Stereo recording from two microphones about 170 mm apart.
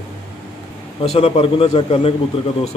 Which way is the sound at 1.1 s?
35° left (ahead or behind).